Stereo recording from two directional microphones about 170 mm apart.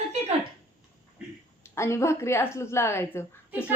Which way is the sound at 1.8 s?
15° left (ahead or behind).